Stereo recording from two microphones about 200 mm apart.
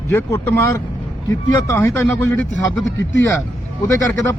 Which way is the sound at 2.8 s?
65° left (ahead or behind).